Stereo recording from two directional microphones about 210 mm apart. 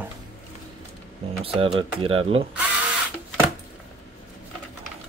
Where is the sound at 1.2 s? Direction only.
25° right (ahead or behind).